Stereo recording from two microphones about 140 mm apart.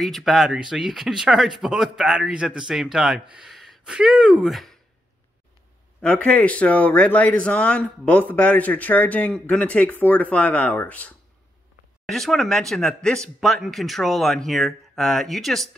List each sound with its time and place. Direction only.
0.0 s speech: centre (ahead or behind)
5.9 s speech: 10° left (ahead or behind)